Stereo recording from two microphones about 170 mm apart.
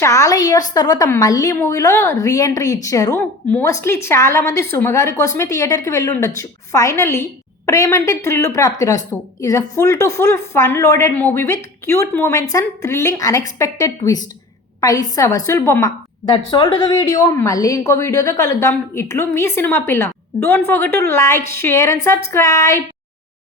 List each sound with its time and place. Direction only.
0.0 s a woman's voice: 20° left (ahead or behind)
16.2 s a woman's voice: 25° left (ahead or behind)